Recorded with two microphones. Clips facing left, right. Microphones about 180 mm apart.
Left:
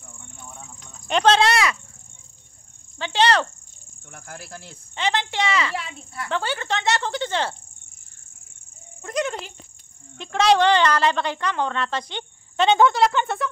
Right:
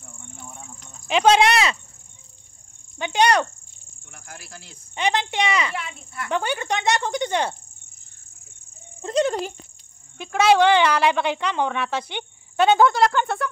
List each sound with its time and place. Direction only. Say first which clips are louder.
1.0 s speech: right 1 dB; 5° right (ahead or behind)
3.0 s speech: right 1 dB; 15° right (ahead or behind)
4.1 s cricket: left 4 dB; 50° left (ahead or behind)
4.9 s speech: right 1 dB; 20° right (ahead or behind)
5.8 s speech: even; 35° left (ahead or behind)
6.2 s speech: right 2 dB; 15° right (ahead or behind)
9.0 s speech: right 5 dB; 30° right (ahead or behind)
10.1 s speech: right 1 dB; 5° right (ahead or behind)